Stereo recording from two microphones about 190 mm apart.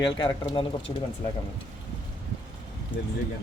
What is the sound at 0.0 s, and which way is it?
Speech, 25° left (ahead or behind).